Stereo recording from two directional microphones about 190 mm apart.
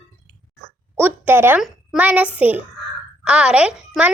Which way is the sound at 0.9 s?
10° right (ahead or behind).